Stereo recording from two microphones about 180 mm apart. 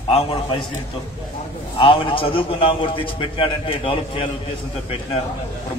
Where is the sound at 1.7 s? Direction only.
30° left (ahead or behind).